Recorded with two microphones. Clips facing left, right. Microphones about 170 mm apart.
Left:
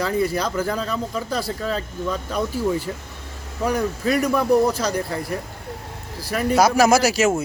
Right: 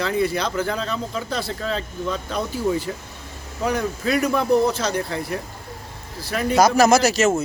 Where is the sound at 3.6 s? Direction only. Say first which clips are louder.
Left 1 dB; 10° left (ahead or behind).